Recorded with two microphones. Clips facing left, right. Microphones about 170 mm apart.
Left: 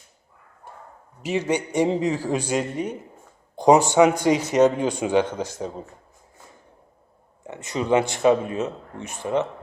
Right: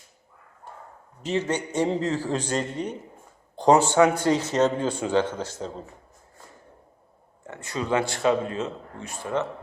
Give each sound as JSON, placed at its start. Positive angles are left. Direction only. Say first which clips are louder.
{"t": 1.2, "sound": "a man's voice", "louder": "left 2 dB", "side_deg": 10}
{"t": 7.4, "sound": "a man's voice", "louder": "left 4 dB", "side_deg": 20}